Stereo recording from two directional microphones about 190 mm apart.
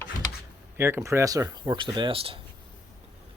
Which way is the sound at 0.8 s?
15° right (ahead or behind).